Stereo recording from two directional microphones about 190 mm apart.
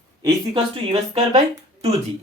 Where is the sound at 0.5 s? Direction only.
30° right (ahead or behind).